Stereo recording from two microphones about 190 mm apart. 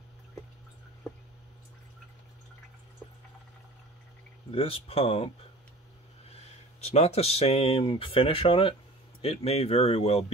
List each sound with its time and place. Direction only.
4.5 s speech: 30° left (ahead or behind)